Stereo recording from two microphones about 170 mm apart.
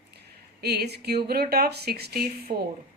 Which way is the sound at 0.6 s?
70° right (ahead or behind).